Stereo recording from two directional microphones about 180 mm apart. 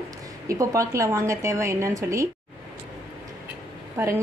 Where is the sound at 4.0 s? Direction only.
15° right (ahead or behind).